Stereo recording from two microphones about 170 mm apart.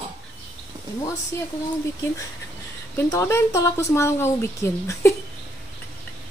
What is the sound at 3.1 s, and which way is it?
Speech, 15° left (ahead or behind).